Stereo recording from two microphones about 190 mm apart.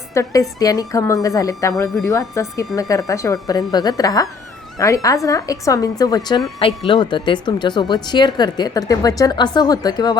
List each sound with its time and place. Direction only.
0.1 s a woman's voice: 15° left (ahead or behind)